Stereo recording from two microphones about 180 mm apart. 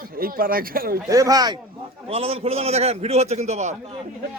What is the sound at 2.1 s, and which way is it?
A man's voice, 35° right (ahead or behind).